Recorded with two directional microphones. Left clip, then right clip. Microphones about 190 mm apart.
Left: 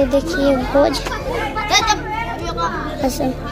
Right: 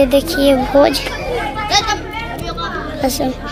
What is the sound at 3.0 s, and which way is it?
Speech, centre (ahead or behind).